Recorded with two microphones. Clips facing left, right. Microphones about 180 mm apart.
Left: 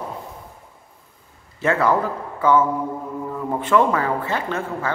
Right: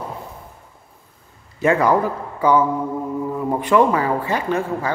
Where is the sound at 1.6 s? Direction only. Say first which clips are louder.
Right 3 dB; 15° right (ahead or behind).